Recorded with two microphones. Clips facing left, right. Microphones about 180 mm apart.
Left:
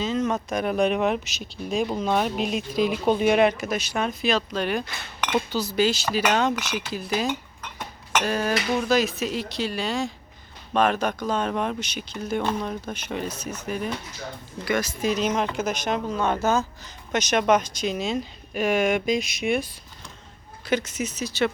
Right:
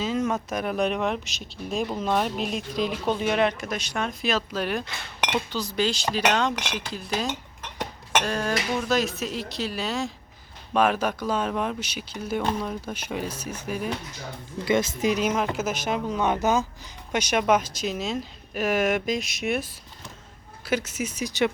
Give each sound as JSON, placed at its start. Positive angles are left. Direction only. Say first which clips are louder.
{"t": 0.0, "sound": "speech", "louder": "left 1 dB", "side_deg": -10}
{"t": 14.6, "sound": "speech", "louder": "right 2 dB", "side_deg": -25}
{"t": 15.1, "sound": "speech", "louder": "left 2 dB", "side_deg": -10}
{"t": 16.0, "sound": "speech", "louder": "right 1 dB", "side_deg": -15}
{"t": 20.7, "sound": "speech", "louder": "left 2 dB", "side_deg": -5}